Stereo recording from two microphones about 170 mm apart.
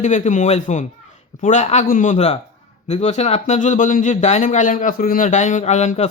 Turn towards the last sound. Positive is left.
turn(degrees=40)  # may be behind; listen again after turning